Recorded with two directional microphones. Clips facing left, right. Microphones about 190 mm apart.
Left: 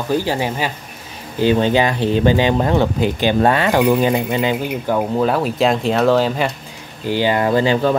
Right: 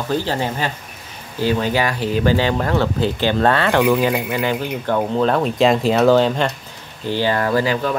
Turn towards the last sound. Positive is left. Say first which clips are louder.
# left 3 dB
turn(degrees=25)  # may be behind; listen again after turning